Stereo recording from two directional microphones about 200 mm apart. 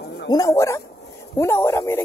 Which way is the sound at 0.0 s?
50° left (ahead or behind).